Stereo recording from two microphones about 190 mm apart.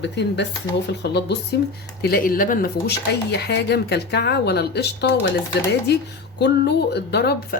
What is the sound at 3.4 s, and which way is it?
Speech, 60° left (ahead or behind).